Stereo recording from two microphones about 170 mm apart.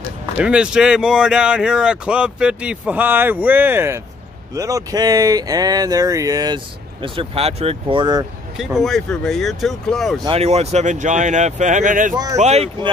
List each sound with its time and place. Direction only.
0.4 s speech: 5° right (ahead or behind); by 8.3 s 25° right (ahead or behind)
8.5 s speech: centre (ahead or behind)
10.2 s speech: 35° right (ahead or behind)
12.4 s speech: 40° right (ahead or behind)